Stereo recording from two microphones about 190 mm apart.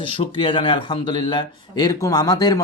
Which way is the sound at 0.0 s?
25° left (ahead or behind).